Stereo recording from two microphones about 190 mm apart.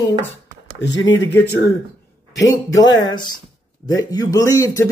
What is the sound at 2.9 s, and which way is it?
Speech, 20° left (ahead or behind).